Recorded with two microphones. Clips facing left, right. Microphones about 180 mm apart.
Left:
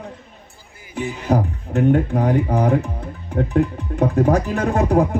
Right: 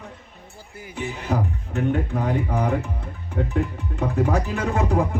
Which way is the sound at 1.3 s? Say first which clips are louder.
Left 7 dB; 35° left (ahead or behind).